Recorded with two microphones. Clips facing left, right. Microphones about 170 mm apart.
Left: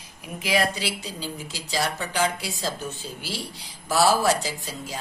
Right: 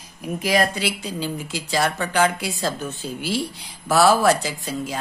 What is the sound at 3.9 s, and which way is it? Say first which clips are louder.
Mantra: right 4 dB; 60° right (ahead or behind).